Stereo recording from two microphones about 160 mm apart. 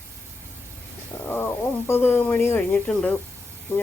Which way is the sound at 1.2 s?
10° left (ahead or behind).